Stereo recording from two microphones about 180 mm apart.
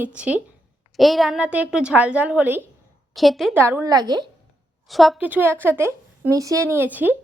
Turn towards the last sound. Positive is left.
turn(degrees=-10)  # may be behind; listen again after turning